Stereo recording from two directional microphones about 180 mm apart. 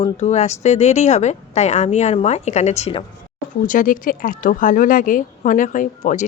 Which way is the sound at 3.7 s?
50° left (ahead or behind).